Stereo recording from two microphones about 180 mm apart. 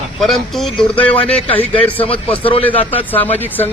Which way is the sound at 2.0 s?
30° left (ahead or behind).